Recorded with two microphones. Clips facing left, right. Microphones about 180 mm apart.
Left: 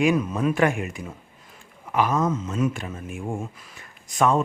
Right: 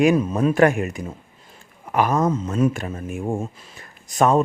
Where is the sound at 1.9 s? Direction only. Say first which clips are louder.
Right 3 dB; 50° right (ahead or behind).